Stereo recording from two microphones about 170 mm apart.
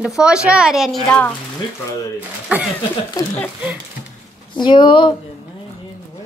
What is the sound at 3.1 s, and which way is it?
Speech, 20° left (ahead or behind).